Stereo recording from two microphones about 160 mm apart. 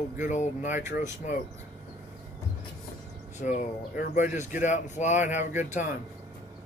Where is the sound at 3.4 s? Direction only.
60° left (ahead or behind).